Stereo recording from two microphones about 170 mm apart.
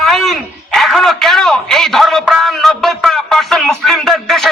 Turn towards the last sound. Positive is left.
turn(degrees=0)  # may be behind; listen again after turning